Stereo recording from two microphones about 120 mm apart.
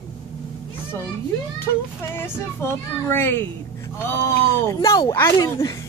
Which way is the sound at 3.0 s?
20° left (ahead or behind).